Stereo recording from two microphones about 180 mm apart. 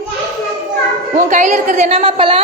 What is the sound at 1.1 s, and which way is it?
A woman's voice, 45° right (ahead or behind).